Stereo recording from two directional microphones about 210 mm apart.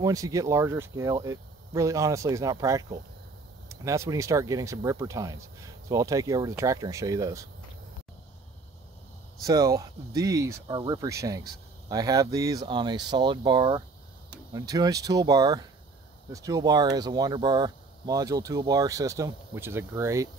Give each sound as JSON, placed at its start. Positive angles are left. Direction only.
{"t": 0.0, "sound": "speech", "side_deg": -15}
{"t": 9.4, "sound": "speech", "side_deg": -15}